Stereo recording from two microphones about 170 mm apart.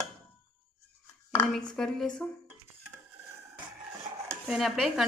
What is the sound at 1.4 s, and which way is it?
Speech, 5° left (ahead or behind).